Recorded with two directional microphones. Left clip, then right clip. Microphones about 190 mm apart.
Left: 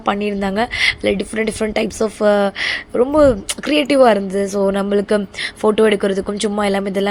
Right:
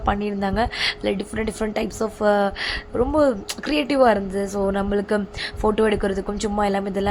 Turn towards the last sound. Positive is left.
turn(degrees=15)  # may be behind; listen again after turning